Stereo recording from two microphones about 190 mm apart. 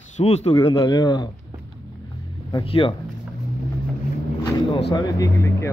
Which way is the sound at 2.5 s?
25° left (ahead or behind).